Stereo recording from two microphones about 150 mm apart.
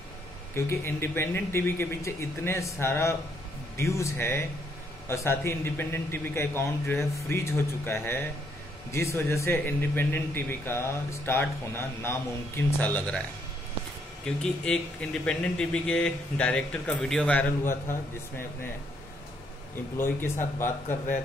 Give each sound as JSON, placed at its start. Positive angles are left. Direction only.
{"t": 0.6, "sound": "a man's voice", "side_deg": 15}
{"t": 14.2, "sound": "speech", "side_deg": 5}
{"t": 20.0, "sound": "a man's voice", "side_deg": 15}